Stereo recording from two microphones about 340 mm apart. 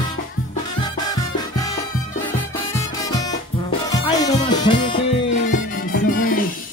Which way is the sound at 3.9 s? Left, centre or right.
Centre.